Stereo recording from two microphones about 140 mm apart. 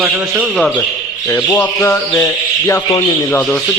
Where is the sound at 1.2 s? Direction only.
15° left (ahead or behind).